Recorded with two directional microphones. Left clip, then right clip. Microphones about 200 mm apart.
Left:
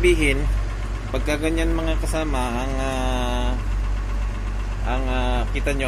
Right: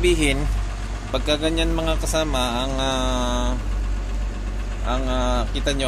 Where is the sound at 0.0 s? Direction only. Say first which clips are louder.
Left 1 dB; 25° right (ahead or behind).